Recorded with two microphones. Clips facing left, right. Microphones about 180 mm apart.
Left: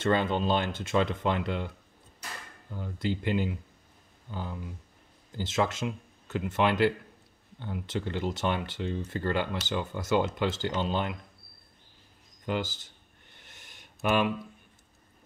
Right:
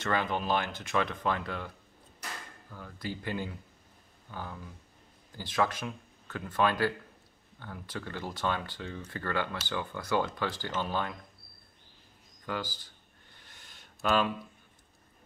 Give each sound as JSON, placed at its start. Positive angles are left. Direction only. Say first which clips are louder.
{"t": 0.0, "sound": "speech", "louder": "left 5 dB", "side_deg": 25}
{"t": 2.7, "sound": "speech", "louder": "left 7 dB", "side_deg": 20}
{"t": 12.4, "sound": "speech", "louder": "left 5 dB", "side_deg": 20}
{"t": 13.7, "sound": "a sound", "louder": "left 1 dB", "side_deg": 15}